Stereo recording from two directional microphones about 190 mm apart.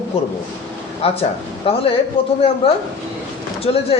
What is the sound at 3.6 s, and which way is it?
Speech, 30° left (ahead or behind).